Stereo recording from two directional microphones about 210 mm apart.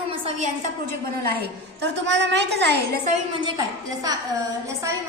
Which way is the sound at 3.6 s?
20° right (ahead or behind).